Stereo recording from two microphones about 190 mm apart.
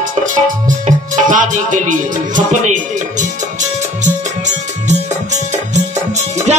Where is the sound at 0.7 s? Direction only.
40° right (ahead or behind).